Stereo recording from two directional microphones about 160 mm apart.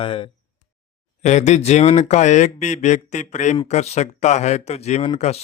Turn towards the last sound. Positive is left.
turn(degrees=45)  # may be behind; listen again after turning